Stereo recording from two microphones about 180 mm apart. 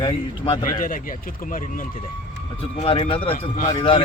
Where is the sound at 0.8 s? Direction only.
50° left (ahead or behind).